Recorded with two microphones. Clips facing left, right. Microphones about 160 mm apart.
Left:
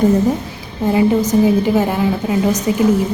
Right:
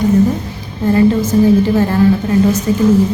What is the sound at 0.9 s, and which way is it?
A woman's voice, 15° left (ahead or behind).